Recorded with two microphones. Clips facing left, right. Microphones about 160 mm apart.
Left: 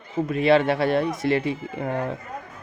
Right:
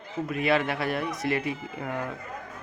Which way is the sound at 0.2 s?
30° left (ahead or behind).